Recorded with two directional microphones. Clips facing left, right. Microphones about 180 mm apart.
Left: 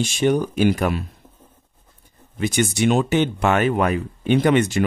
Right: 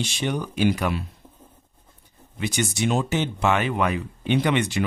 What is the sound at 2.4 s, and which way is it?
Speech, 55° left (ahead or behind).